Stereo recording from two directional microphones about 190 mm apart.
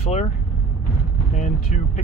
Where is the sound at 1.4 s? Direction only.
40° left (ahead or behind).